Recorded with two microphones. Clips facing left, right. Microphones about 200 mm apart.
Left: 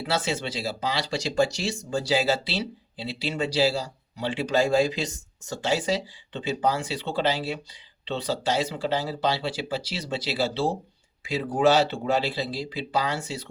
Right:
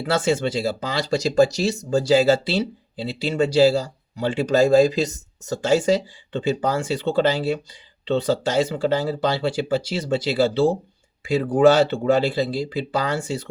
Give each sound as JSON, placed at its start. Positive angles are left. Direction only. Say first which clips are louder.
{"t": 0.0, "sound": "speech", "louder": "right 7 dB", "side_deg": -50}